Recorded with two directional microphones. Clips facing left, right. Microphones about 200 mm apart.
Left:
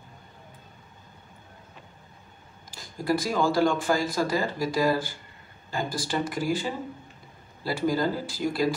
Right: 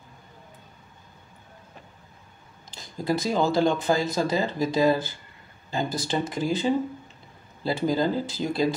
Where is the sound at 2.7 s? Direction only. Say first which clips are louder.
Even; 20° right (ahead or behind).